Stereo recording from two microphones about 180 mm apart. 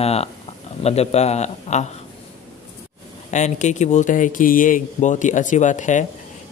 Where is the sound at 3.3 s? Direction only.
40° left (ahead or behind).